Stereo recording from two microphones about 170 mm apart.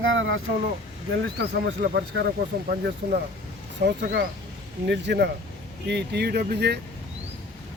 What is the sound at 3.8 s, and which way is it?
Speech, 70° right (ahead or behind).